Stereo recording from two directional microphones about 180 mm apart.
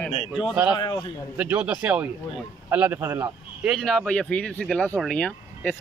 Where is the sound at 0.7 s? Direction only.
25° left (ahead or behind).